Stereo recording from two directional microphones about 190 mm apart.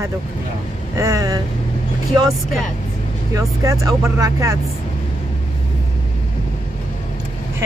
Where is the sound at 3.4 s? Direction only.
15° right (ahead or behind).